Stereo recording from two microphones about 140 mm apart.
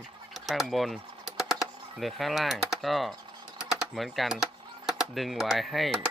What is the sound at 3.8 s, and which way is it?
Speech, centre (ahead or behind).